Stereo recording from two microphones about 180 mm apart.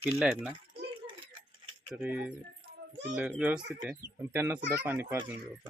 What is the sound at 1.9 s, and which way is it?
Speech, 5° right (ahead or behind).